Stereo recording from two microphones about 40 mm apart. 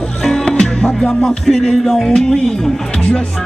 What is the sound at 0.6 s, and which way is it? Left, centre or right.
Music, centre.